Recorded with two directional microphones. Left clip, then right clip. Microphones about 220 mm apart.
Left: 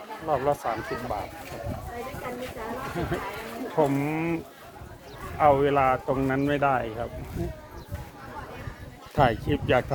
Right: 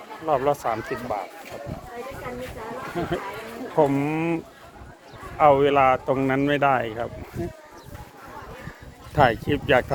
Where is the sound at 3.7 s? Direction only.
50° right (ahead or behind).